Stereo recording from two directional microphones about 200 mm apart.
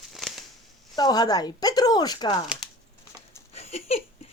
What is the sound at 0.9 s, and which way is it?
Speech, 20° left (ahead or behind).